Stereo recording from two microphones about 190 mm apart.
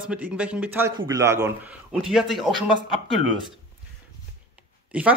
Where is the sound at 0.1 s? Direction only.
5° right (ahead or behind).